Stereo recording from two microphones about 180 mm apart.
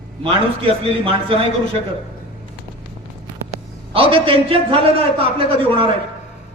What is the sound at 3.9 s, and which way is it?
A man's voice, 30° right (ahead or behind).